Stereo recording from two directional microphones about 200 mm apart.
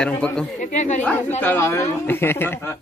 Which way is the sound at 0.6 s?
35° left (ahead or behind).